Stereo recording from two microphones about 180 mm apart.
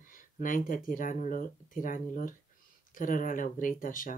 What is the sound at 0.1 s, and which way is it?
Speech, 50° left (ahead or behind).